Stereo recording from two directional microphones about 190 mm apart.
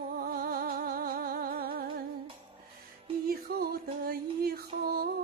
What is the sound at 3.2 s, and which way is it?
Music, 55° right (ahead or behind).